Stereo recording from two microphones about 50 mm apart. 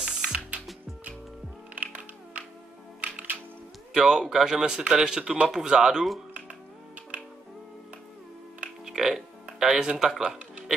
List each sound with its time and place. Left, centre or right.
0.0 s gears: centre
1.8 s music: right
3.9 s speech: centre
8.8 s music: centre
9.6 s speech: centre